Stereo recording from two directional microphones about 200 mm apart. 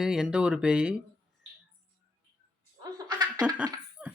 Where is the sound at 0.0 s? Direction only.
5° right (ahead or behind).